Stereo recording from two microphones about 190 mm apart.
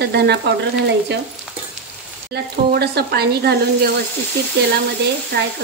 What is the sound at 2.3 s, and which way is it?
Speech, 60° right (ahead or behind).